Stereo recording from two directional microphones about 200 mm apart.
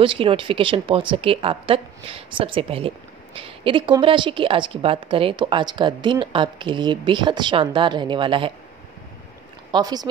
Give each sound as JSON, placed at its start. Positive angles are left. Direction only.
{"t": 0.0, "sound": "a woman's voice", "side_deg": -25}
{"t": 9.7, "sound": "speech", "side_deg": -20}